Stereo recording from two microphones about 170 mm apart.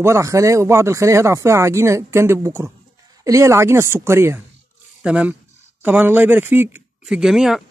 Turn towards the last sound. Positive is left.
turn(degrees=0)  # may be behind; listen again after turning